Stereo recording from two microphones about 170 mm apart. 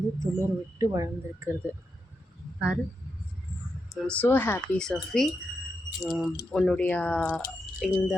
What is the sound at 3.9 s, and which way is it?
Speech, 10° left (ahead or behind).